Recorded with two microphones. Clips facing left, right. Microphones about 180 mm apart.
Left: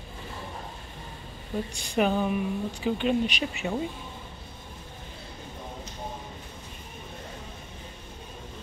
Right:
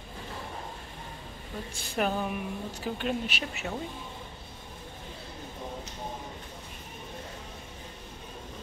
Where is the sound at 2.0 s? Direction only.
Centre (ahead or behind).